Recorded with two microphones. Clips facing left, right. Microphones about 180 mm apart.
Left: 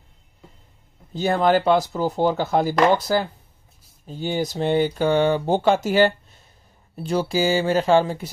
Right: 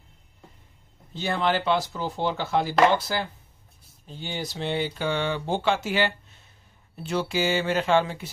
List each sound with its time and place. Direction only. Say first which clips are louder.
1.1 s speech: left 7 dB; 40° left (ahead or behind)